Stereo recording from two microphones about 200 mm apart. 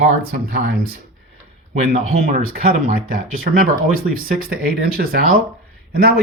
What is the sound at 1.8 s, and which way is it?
Speech, 35° right (ahead or behind).